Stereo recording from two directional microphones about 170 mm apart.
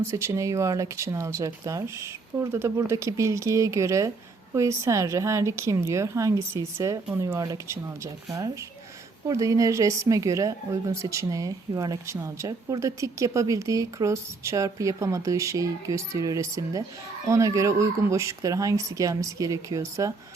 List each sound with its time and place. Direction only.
0.0 s speech: 15° right (ahead or behind)